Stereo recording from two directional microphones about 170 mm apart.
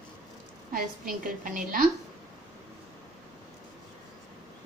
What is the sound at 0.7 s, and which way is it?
A woman's voice, 55° right (ahead or behind).